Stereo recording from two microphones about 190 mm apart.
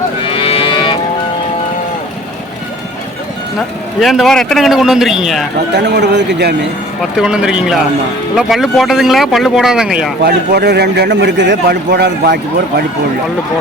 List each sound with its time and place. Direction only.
0.3 s livestock: 30° left (ahead or behind)
4.0 s speech: centre (ahead or behind)
5.7 s a man's voice: 65° right (ahead or behind)
7.2 s speech: 5° right (ahead or behind)
10.2 s a man's voice: 60° right (ahead or behind)